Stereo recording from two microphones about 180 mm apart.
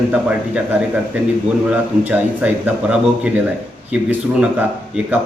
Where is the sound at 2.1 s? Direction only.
10° right (ahead or behind).